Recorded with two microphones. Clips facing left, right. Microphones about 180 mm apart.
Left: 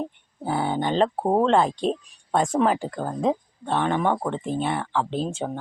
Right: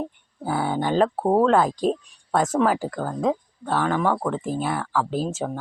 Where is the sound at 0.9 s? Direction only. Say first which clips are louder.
Right 2 dB; 5° right (ahead or behind).